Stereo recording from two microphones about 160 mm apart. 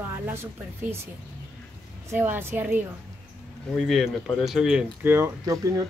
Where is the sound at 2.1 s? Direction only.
15° right (ahead or behind).